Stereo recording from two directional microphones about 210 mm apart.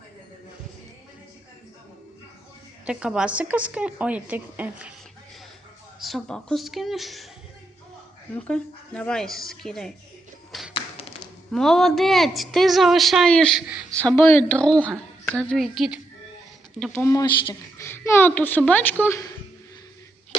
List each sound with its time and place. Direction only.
2.8 s a woman's voice: 5° right (ahead or behind)
6.0 s a woman's voice: centre (ahead or behind)
8.4 s a woman's voice: 5° left (ahead or behind)
10.8 s tap: 25° left (ahead or behind)
11.5 s a woman's voice: centre (ahead or behind)